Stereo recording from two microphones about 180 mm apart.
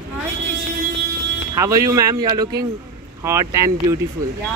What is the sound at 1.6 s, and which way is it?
Speech, 15° right (ahead or behind).